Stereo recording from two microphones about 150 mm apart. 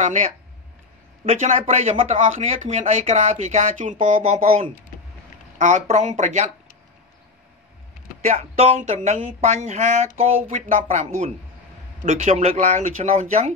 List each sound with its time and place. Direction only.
0.0 s speech: 55° right (ahead or behind)
8.3 s speech: 45° right (ahead or behind)